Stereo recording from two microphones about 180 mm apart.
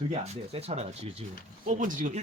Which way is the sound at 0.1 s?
35° right (ahead or behind).